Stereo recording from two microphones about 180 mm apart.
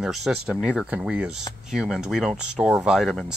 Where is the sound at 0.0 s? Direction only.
5° right (ahead or behind).